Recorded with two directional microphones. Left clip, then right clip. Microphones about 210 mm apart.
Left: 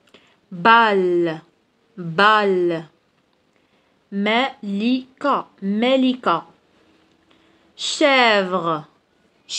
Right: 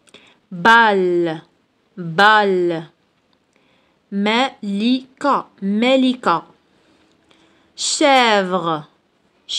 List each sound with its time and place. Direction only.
0.6 s speech: 25° right (ahead or behind)
4.1 s a woman's voice: 40° right (ahead or behind)